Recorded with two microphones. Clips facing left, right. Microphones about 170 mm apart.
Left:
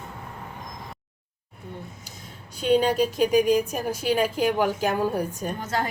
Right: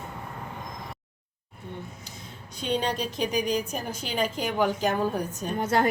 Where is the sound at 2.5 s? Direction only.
5° left (ahead or behind).